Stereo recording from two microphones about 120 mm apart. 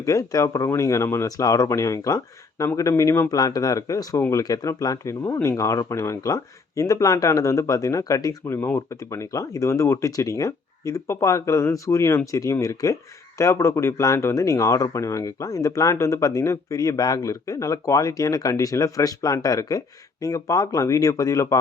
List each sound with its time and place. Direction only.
0.0 s speech: 30° left (ahead or behind)